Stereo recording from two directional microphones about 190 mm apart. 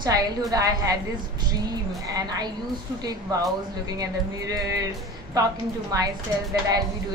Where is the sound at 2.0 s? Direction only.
20° right (ahead or behind).